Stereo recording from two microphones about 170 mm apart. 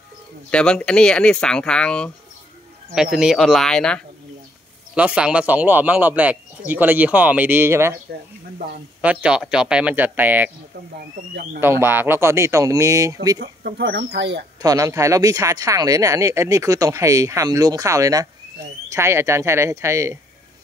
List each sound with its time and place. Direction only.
0.5 s speech: 5° left (ahead or behind)
4.9 s speech: 5° right (ahead or behind)
9.0 s speech: 5° right (ahead or behind)
11.6 s speech: 15° right (ahead or behind)
13.4 s speech: 80° right
14.6 s speech: 20° right (ahead or behind)